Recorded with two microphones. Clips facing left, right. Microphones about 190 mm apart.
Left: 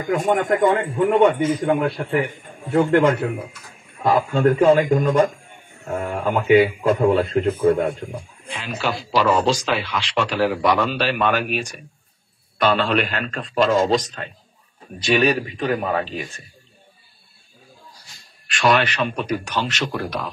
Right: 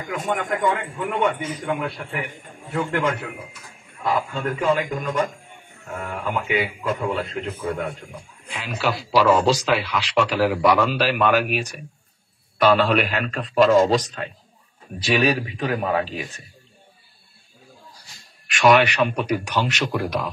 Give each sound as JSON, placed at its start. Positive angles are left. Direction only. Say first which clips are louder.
{"t": 0.1, "sound": "a man's voice", "louder": "left 7 dB", "side_deg": 45}
{"t": 4.0, "sound": "a man's voice", "louder": "left 7 dB", "side_deg": 50}
{"t": 8.5, "sound": "speech", "louder": "even", "side_deg": -5}
{"t": 18.7, "sound": "speech", "louder": "right 3 dB", "side_deg": -10}